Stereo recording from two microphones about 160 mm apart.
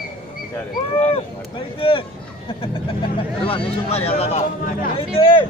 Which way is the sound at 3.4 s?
35° left (ahead or behind).